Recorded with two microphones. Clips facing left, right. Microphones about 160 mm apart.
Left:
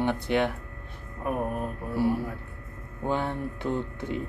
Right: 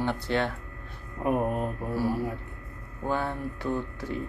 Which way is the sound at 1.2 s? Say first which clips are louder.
Right 3 dB; 20° right (ahead or behind).